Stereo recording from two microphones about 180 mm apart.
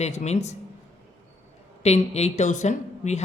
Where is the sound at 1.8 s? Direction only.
35° left (ahead or behind).